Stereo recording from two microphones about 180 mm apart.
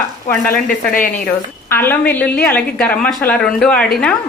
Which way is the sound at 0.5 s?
50° left (ahead or behind).